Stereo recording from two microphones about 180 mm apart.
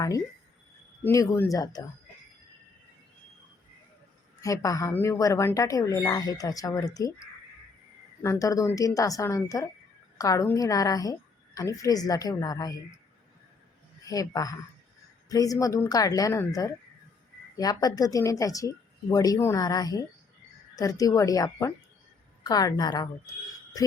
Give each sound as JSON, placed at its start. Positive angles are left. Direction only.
{"t": 1.0, "sound": "speech", "side_deg": 15}
{"t": 4.4, "sound": "speech", "side_deg": 20}
{"t": 8.2, "sound": "speech", "side_deg": 15}
{"t": 14.0, "sound": "speech", "side_deg": 20}